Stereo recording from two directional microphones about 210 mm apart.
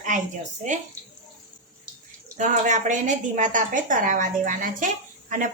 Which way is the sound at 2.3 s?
35° right (ahead or behind).